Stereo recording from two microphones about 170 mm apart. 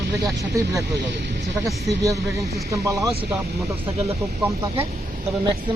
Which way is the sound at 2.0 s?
20° right (ahead or behind).